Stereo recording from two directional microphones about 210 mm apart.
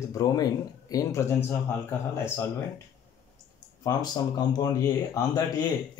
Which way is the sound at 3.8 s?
20° left (ahead or behind).